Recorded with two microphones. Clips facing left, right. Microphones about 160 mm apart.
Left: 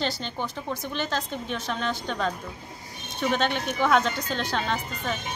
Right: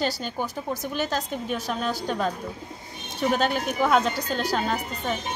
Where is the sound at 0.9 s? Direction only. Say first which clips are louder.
Right 2 dB; 10° right (ahead or behind).